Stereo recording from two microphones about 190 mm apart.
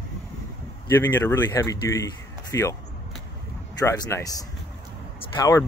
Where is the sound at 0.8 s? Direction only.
10° left (ahead or behind).